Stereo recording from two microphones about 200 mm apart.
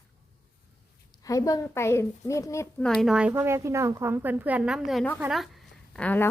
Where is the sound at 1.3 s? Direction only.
15° left (ahead or behind).